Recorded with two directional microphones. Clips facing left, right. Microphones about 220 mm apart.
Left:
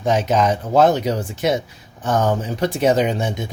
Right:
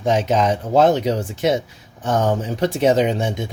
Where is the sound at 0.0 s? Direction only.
25° right (ahead or behind).